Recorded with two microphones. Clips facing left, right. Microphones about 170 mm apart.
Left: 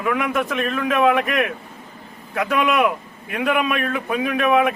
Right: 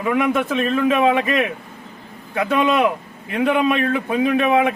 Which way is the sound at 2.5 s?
25° right (ahead or behind).